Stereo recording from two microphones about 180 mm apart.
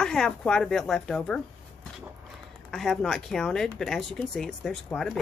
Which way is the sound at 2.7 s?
Centre (ahead or behind).